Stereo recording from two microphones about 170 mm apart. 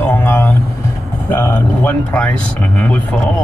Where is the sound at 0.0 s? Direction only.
15° left (ahead or behind).